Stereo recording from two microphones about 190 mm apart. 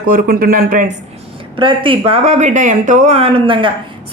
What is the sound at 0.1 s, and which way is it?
Speech, 50° right (ahead or behind).